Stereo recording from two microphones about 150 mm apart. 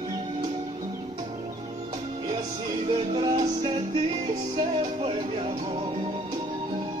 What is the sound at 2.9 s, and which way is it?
Music, 30° right (ahead or behind).